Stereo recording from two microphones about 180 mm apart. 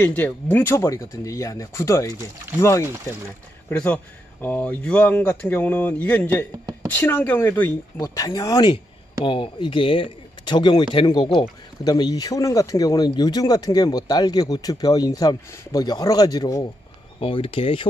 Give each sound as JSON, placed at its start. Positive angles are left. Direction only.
{"t": 0.0, "sound": "speech", "side_deg": 10}
{"t": 17.2, "sound": "speech", "side_deg": 30}